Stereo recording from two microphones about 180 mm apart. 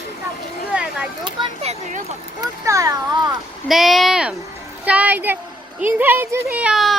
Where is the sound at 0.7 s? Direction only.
5° right (ahead or behind).